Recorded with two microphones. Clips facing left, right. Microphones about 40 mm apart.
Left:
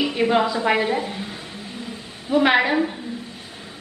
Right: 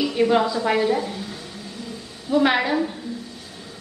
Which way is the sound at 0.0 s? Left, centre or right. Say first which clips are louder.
Even; left.